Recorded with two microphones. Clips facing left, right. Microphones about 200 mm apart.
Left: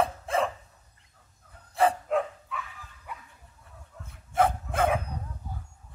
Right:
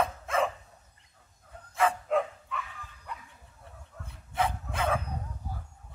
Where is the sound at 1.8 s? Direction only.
35° left (ahead or behind).